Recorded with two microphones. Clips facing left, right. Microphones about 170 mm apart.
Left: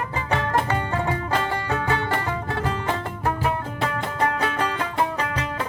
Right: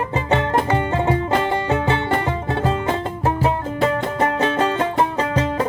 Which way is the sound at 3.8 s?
25° right (ahead or behind).